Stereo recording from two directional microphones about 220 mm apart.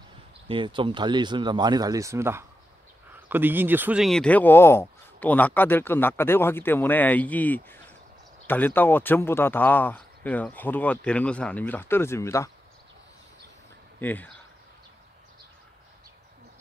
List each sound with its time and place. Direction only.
0.5 s speech: 20° right (ahead or behind); by 12.4 s 10° left (ahead or behind)
14.0 s speech: 10° left (ahead or behind)